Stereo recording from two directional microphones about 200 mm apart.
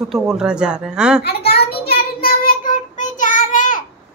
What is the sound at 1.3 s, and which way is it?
Child singing, 55° left (ahead or behind).